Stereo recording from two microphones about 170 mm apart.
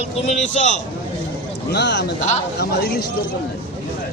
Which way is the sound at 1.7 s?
90° left.